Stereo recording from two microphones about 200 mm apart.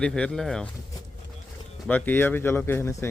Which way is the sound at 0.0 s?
5° left (ahead or behind).